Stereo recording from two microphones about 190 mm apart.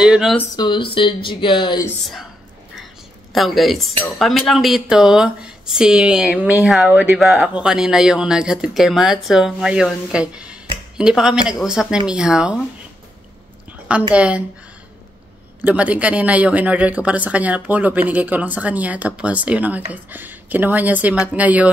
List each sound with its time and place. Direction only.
0.0 s speech: 5° right (ahead or behind)
0.6 s speech: 25° left (ahead or behind)
3.3 s speech: centre (ahead or behind)
14.1 s speech: 5° right (ahead or behind)
15.6 s speech: 5° right (ahead or behind)